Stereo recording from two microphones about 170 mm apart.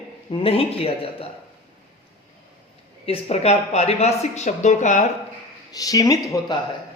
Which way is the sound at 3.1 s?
35° left (ahead or behind).